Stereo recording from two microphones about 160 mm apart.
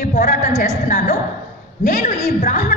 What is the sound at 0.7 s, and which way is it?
A woman's voice, 55° left (ahead or behind).